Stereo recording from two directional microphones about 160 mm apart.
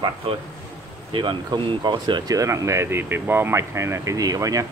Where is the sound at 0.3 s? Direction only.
35° right (ahead or behind).